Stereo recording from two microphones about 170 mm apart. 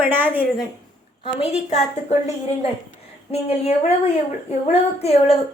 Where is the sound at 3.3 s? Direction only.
35° left (ahead or behind).